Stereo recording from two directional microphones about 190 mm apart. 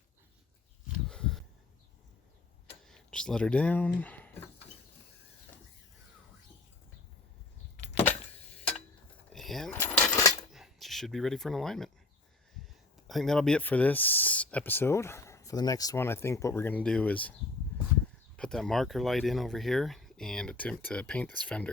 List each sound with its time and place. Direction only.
1.0 s a sound: 5° left (ahead or behind)
2.8 s speech: 5° left (ahead or behind)
9.3 s vehicle: centre (ahead or behind)
9.7 s a sound: 15° left (ahead or behind)
10.5 s speech: centre (ahead or behind)
13.1 s speech: centre (ahead or behind)
18.3 s speech: 5° left (ahead or behind)